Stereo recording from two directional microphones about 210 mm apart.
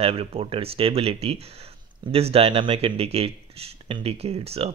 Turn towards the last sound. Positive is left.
turn(degrees=-30)  # may be behind; listen again after turning